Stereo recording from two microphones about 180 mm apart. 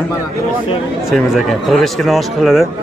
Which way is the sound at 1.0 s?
Centre (ahead or behind).